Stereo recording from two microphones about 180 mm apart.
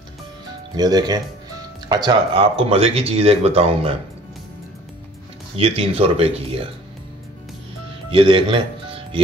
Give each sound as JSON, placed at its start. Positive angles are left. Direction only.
{"t": 0.7, "sound": "speech", "side_deg": -20}
{"t": 5.6, "sound": "speech", "side_deg": -30}
{"t": 8.1, "sound": "speech", "side_deg": -30}